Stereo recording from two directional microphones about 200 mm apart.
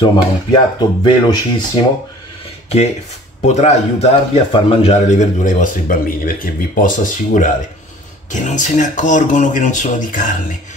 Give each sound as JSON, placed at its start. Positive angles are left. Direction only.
{"t": 0.0, "sound": "speech", "side_deg": 25}
{"t": 3.4, "sound": "a man's voice", "side_deg": 35}